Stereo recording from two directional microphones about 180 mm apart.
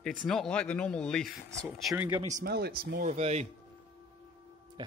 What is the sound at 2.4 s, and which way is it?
Speech, 60° right (ahead or behind).